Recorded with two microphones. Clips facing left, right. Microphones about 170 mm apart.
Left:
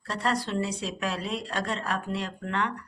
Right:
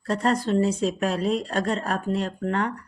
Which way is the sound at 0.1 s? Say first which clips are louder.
Right 6 dB; 40° right (ahead or behind).